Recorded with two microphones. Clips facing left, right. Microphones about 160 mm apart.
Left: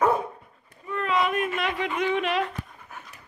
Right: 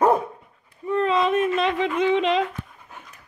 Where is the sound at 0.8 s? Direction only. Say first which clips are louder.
Right 5 dB; 30° right (ahead or behind).